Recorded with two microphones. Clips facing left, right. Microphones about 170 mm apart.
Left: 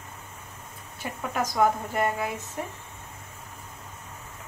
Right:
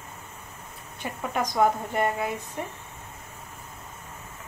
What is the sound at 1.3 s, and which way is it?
Speech, centre (ahead or behind).